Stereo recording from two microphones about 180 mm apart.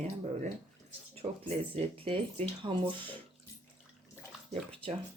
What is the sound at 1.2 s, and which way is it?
Speech, 30° right (ahead or behind).